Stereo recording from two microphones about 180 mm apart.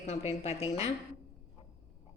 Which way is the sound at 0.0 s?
40° left (ahead or behind).